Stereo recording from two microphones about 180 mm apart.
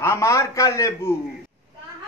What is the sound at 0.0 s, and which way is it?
A man's voice, 15° left (ahead or behind).